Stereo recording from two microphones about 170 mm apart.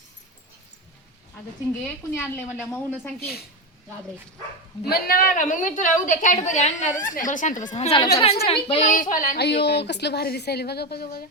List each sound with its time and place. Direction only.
1.8 s speech: 10° left (ahead or behind)
3.2 s a woman's voice: 65° left (ahead or behind)
4.8 s a woman's voice: 65° left (ahead or behind); by 8.8 s 35° left (ahead or behind)
8.8 s a woman's voice: 50° left (ahead or behind)